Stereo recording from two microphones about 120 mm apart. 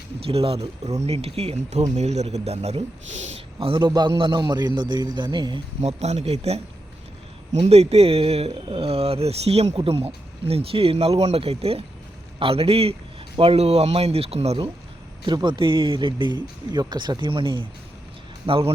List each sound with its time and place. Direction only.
0.3 s speech: 55° right (ahead or behind); by 5.6 s 40° right (ahead or behind)
5.8 s a man's voice: 65° right (ahead or behind)
15.2 s a man's voice: 40° right (ahead or behind)